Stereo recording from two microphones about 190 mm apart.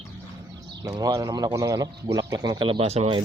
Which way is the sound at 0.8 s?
20° right (ahead or behind).